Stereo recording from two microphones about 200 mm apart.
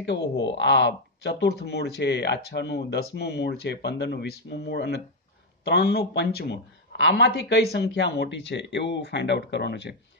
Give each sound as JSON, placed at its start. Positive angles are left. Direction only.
{"t": 0.0, "sound": "speech", "side_deg": 65}